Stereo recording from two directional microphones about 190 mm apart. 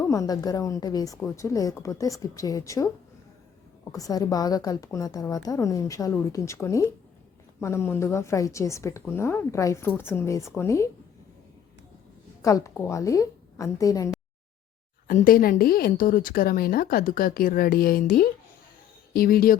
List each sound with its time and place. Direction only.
0.0 s a woman's voice: 15° left (ahead or behind)
3.9 s a woman's voice: 20° left (ahead or behind)
12.4 s a woman's voice: 15° left (ahead or behind)
15.0 s speech: 50° left (ahead or behind)